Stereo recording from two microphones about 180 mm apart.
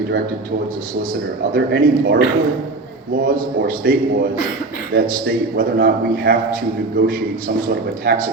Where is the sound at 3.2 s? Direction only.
50° right (ahead or behind).